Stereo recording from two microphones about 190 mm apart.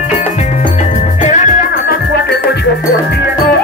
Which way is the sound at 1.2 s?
40° left (ahead or behind).